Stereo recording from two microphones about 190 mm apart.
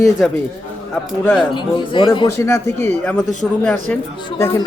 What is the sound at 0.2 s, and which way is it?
Speech, 5° left (ahead or behind).